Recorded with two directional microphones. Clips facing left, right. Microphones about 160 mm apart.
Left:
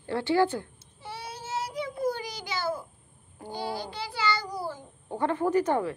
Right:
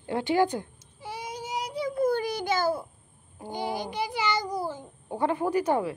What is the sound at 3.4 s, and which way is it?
Child singing, 20° right (ahead or behind).